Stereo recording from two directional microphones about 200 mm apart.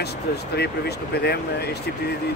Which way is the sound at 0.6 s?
55° left (ahead or behind).